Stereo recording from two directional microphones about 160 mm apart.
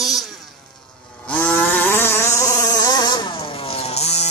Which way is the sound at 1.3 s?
10° left (ahead or behind).